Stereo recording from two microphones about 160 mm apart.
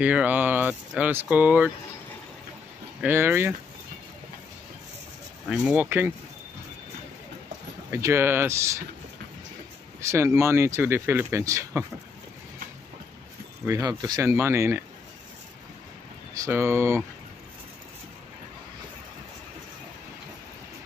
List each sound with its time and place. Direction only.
0.0 s speech: 10° right (ahead or behind)
3.0 s speech: 15° right (ahead or behind)
5.5 s speech: 5° right (ahead or behind)
7.9 s speech: 15° right (ahead or behind)
9.9 s speech: 15° right (ahead or behind)
13.7 s speech: 20° right (ahead or behind)
16.3 s speech: 15° right (ahead or behind)